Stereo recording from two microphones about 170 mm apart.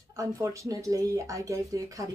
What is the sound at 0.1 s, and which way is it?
A woman's voice, 20° right (ahead or behind).